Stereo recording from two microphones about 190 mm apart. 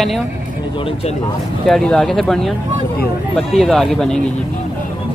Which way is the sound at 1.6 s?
Centre (ahead or behind).